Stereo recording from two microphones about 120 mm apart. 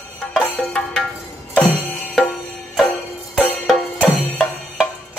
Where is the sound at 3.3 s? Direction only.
5° left (ahead or behind).